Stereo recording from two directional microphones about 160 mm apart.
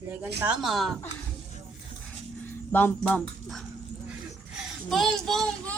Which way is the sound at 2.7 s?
10° left (ahead or behind).